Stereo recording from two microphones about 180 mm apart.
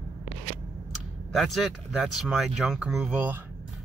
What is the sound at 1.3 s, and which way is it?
Speech, centre (ahead or behind).